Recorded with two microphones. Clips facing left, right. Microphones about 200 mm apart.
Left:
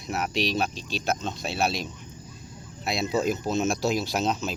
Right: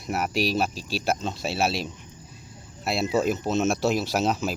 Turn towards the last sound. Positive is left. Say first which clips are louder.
# right 2 dB
turn(degrees=-5)  # may be behind; listen again after turning